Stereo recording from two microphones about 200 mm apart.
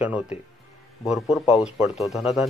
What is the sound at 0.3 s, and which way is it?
Speech, 30° left (ahead or behind).